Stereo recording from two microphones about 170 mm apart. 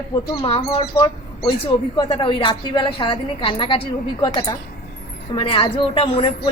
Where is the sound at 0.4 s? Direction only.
30° left (ahead or behind).